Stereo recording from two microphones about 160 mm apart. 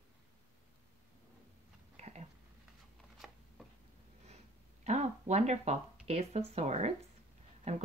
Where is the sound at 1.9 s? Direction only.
45° right (ahead or behind).